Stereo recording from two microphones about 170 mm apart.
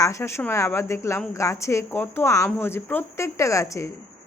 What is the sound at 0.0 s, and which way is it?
Speech, 15° left (ahead or behind).